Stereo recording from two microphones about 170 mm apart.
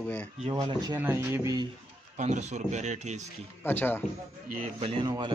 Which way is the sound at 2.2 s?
45° right (ahead or behind).